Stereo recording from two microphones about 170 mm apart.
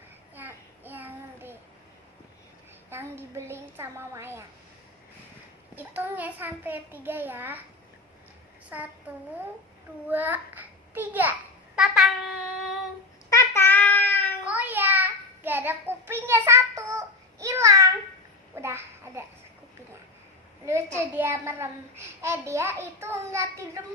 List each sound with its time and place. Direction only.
0.3 s child singing: 10° right (ahead or behind)
2.9 s a child's voice: 15° right (ahead or behind)
5.7 s a child's voice: 10° right (ahead or behind)
10.1 s a child's voice: 10° right (ahead or behind)
11.8 s babbling: 5° right (ahead or behind)
13.3 s child singing: 15° left (ahead or behind)
14.4 s child singing: 10° right (ahead or behind)
18.5 s a sound: 15° right (ahead or behind)
21.2 s a child's voice: 15° right (ahead or behind)